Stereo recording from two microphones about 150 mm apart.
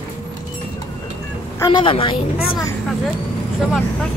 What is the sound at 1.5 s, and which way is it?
Speech, 30° left (ahead or behind).